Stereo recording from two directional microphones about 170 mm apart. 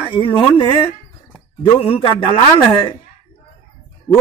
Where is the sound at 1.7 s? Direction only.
30° left (ahead or behind).